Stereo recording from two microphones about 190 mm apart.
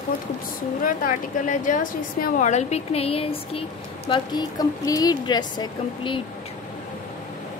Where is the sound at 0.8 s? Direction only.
45° left (ahead or behind); by 6.2 s 25° left (ahead or behind).